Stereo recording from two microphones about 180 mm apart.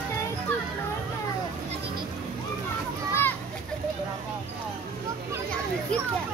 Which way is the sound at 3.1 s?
10° left (ahead or behind).